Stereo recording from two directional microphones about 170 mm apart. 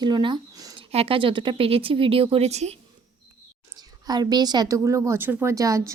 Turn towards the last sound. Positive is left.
turn(degrees=-20)  # may be behind; listen again after turning